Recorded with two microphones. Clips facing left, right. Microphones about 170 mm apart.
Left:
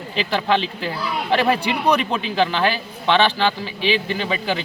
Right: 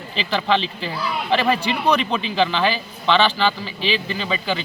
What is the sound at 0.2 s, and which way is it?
Speech, 5° left (ahead or behind).